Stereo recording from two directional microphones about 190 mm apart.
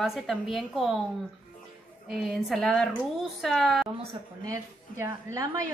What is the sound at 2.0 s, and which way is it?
A woman's voice, centre (ahead or behind).